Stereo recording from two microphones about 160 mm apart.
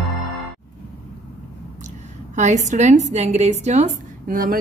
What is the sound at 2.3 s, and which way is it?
A woman's voice, 50° right (ahead or behind).